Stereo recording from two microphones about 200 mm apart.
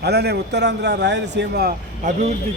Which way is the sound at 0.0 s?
55° right (ahead or behind).